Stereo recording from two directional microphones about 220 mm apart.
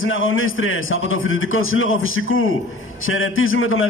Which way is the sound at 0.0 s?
65° left (ahead or behind).